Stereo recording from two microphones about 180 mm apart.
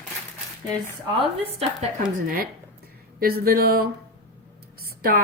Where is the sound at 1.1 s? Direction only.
35° right (ahead or behind).